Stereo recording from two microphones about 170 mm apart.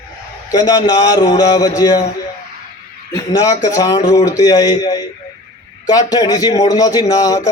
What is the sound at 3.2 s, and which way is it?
A man's voice, 20° left (ahead or behind).